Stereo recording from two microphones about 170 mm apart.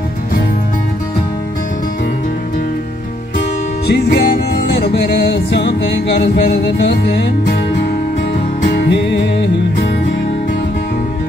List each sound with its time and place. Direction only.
3.8 s music: 75° left (ahead or behind)
8.7 s music: 90° left